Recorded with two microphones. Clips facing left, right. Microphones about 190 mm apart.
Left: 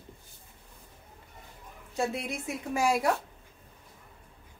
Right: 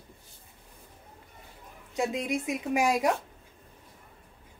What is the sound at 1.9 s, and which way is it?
A woman's voice, 15° right (ahead or behind).